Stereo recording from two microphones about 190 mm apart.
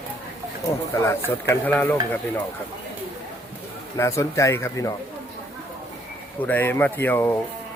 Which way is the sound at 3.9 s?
15° left (ahead or behind).